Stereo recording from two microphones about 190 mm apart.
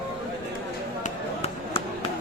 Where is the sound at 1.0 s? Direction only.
30° left (ahead or behind).